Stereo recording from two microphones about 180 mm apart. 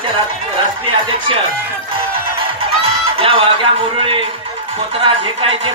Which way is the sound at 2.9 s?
30° right (ahead or behind).